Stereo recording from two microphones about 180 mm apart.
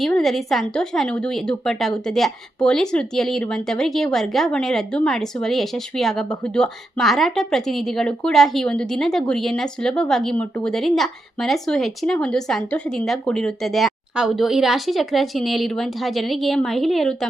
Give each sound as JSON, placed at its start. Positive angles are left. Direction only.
{"t": 0.0, "sound": "a woman's voice", "side_deg": 0}